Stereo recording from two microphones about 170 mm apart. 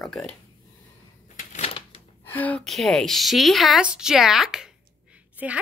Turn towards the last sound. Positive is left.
turn(degrees=-10)  # may be behind; listen again after turning